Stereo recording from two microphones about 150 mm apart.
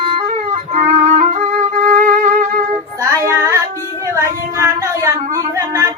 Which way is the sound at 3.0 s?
20° right (ahead or behind).